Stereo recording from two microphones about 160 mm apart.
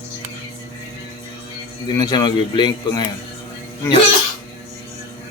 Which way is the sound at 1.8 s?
25° left (ahead or behind).